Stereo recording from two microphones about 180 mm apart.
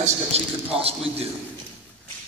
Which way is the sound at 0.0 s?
35° right (ahead or behind).